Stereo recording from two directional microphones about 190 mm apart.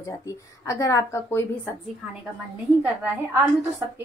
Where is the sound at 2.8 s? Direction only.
10° right (ahead or behind).